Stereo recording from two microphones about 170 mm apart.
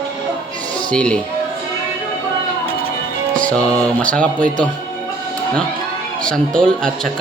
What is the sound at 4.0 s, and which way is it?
Speech, 5° left (ahead or behind).